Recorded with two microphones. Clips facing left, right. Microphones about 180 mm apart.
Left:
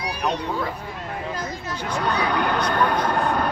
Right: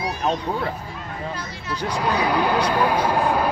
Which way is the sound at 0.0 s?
70° left (ahead or behind).